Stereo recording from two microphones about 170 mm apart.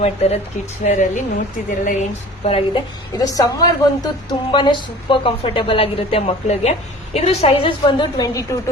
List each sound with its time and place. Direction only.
0.0 s a woman's voice: 40° left (ahead or behind)
2.4 s a woman's voice: 35° left (ahead or behind)
3.2 s a woman's voice: 20° left (ahead or behind)